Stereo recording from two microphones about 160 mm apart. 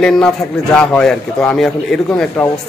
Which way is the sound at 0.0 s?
5° left (ahead or behind).